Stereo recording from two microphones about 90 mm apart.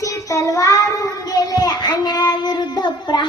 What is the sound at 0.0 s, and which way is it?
Child singing, 35° left (ahead or behind).